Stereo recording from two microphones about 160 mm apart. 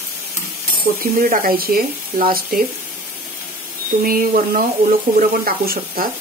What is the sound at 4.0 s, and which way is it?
Speech, 60° right (ahead or behind).